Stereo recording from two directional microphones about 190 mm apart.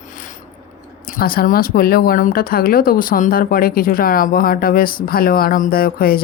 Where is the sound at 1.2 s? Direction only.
50° left (ahead or behind).